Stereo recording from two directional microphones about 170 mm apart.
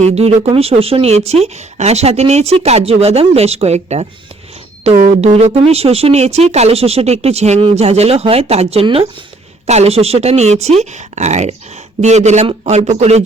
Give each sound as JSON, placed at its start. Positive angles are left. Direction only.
{"t": 0.0, "sound": "speech", "side_deg": -40}